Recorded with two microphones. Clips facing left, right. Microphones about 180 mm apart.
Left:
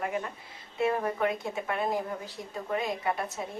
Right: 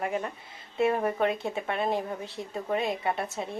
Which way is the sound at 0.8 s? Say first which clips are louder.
Right 2 dB; 25° right (ahead or behind).